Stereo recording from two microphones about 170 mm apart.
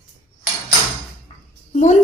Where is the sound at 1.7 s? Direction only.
45° left (ahead or behind).